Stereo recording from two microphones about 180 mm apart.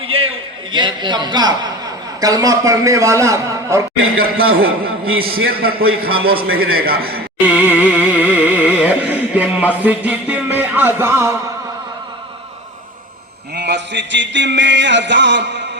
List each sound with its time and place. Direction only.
0.0 s a sound: 30° right (ahead or behind)
2.2 s a man's voice: 20° right (ahead or behind)
4.2 s a man's voice: 55° right (ahead or behind)
7.3 s a sound: 10° right (ahead or behind)
7.8 s music: 10° right (ahead or behind)
9.8 s a man's voice: 10° right (ahead or behind)
13.5 s a man's voice: 70° right (ahead or behind)